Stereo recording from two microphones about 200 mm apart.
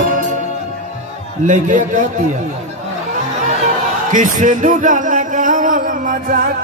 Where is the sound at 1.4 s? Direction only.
40° right (ahead or behind).